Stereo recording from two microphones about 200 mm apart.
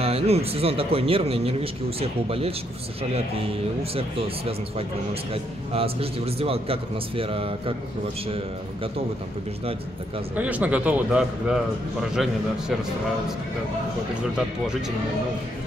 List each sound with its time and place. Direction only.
0.0 s a man's voice: 30° right (ahead or behind)
5.3 s a man's voice: 30° right (ahead or behind)
10.3 s a man's voice: 5° right (ahead or behind)